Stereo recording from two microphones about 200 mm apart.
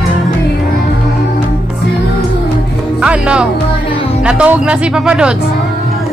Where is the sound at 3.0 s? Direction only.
5° right (ahead or behind).